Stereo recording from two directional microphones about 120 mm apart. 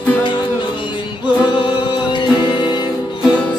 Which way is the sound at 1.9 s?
40° left (ahead or behind).